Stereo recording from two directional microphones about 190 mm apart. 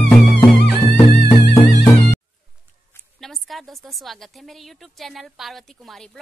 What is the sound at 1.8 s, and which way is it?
Music, 15° left (ahead or behind).